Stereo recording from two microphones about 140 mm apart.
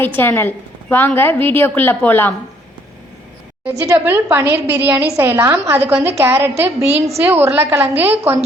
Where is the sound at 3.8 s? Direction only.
20° right (ahead or behind).